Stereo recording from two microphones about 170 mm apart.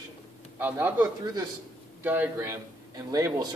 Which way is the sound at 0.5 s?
10° right (ahead or behind).